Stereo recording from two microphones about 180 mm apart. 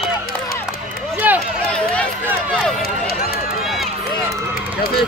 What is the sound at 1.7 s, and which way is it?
Run, 5° left (ahead or behind).